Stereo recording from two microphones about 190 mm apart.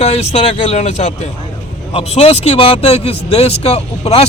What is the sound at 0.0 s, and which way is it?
Speech, 35° left (ahead or behind).